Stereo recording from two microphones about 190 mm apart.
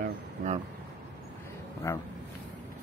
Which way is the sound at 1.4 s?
15° left (ahead or behind).